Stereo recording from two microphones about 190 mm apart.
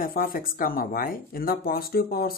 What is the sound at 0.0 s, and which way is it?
Speech, 50° left (ahead or behind).